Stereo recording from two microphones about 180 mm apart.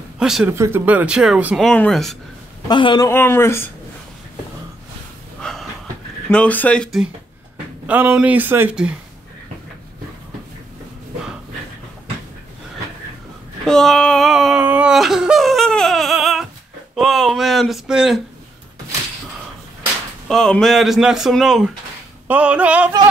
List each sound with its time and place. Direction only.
0.2 s speech: 5° right (ahead or behind)
0.5 s speech: 15° right (ahead or behind)
2.7 s a man's voice: 25° left (ahead or behind)
3.1 s speech: 10° left (ahead or behind)
5.4 s a sound: centre (ahead or behind)
6.3 s speech: 10° left (ahead or behind)
7.8 s speech: 10° right (ahead or behind)
13.7 s a sound: 5° left (ahead or behind)
16.9 s speech: centre (ahead or behind)
20.2 s speech: 5° left (ahead or behind)